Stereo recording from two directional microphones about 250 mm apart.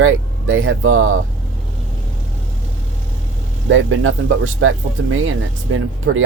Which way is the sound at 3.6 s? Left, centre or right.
Right.